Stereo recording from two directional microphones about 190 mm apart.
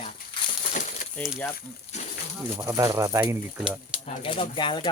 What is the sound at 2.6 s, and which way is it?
Speech, 15° right (ahead or behind).